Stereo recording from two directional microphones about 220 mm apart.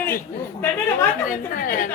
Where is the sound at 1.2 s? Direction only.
40° left (ahead or behind).